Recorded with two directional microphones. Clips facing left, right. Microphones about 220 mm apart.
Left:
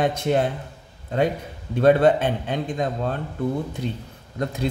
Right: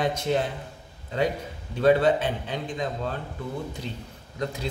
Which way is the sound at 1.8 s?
55° left (ahead or behind).